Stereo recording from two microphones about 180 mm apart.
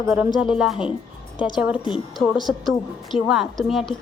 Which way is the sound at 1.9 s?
Centre (ahead or behind).